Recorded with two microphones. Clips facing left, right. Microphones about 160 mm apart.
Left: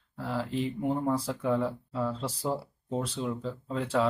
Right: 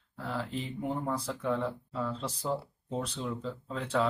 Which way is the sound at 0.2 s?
5° left (ahead or behind).